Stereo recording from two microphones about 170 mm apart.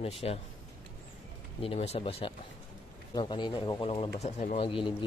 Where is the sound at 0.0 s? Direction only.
35° left (ahead or behind).